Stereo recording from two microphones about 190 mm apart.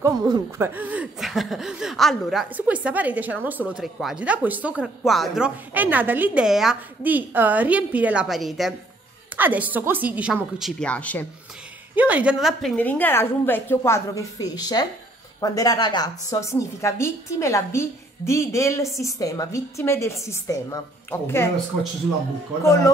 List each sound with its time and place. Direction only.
0.0 s speech: 15° right (ahead or behind)
10.8 s a woman's voice: 5° left (ahead or behind)
11.9 s a woman's voice: 10° right (ahead or behind); by 21.5 s 15° left (ahead or behind)